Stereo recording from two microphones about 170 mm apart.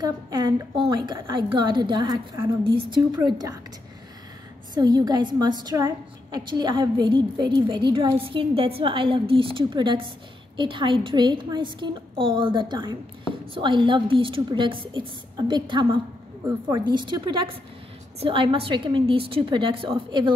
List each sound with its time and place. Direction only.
0.0 s a woman's voice: 25° right (ahead or behind)
4.7 s a woman's voice: 25° right (ahead or behind)